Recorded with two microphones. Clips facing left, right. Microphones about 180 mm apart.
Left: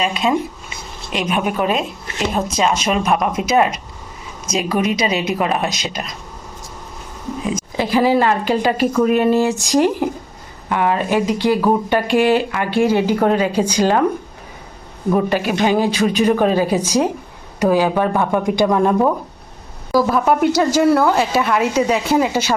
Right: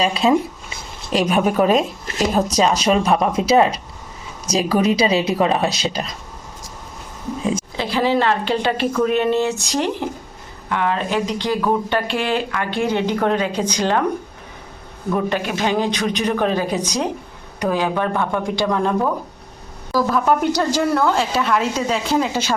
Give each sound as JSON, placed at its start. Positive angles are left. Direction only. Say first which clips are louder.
{"t": 0.0, "sound": "speech", "louder": "right 2 dB", "side_deg": -30}
{"t": 7.8, "sound": "speech", "louder": "left 5 dB", "side_deg": 10}
{"t": 15.3, "sound": "speech", "louder": "left 4 dB", "side_deg": 10}
{"t": 19.9, "sound": "speech", "louder": "left 2 dB", "side_deg": 10}